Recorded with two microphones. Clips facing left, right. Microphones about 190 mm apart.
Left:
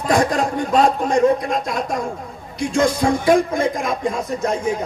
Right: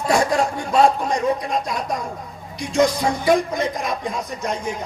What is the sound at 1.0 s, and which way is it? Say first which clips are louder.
A man's voice: left 5 dB; 50° left (ahead or behind).